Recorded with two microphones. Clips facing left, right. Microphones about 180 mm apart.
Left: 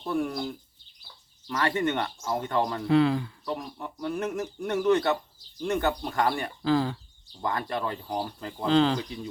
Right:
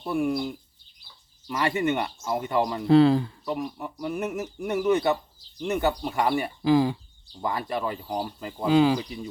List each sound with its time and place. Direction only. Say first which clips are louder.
0.0 s speech: right 3 dB; 10° right (ahead or behind)
2.8 s speech: right 6 dB; 35° right (ahead or behind)
3.4 s speech: right 3 dB; 10° right (ahead or behind)